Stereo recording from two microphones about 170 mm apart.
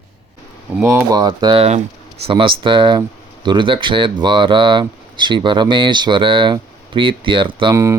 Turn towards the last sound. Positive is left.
turn(degrees=-20)  # may be behind; listen again after turning